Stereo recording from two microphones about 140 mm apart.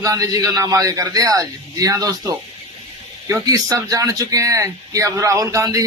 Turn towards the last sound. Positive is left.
turn(degrees=-25)  # may be behind; listen again after turning